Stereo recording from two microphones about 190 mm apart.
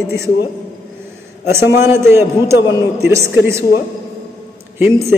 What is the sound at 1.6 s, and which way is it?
Speech, 60° left (ahead or behind).